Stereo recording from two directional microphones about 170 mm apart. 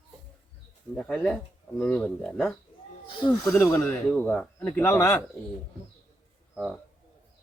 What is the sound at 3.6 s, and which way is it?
Speech, 20° left (ahead or behind).